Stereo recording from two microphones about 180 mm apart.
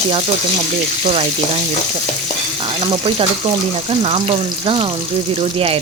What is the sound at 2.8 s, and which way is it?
Frying, 30° right (ahead or behind).